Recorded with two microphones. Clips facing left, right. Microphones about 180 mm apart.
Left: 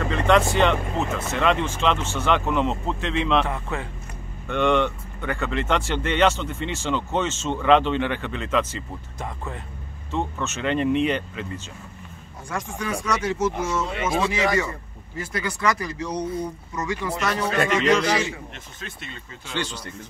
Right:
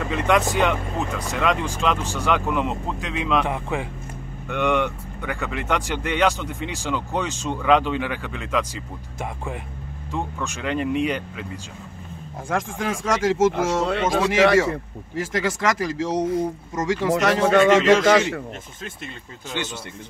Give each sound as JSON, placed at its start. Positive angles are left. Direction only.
{"t": 0.4, "sound": "speech", "side_deg": 0}
{"t": 4.5, "sound": "speech", "side_deg": -5}
{"t": 12.4, "sound": "a man's voice", "side_deg": -90}
{"t": 19.6, "sound": "speech", "side_deg": -15}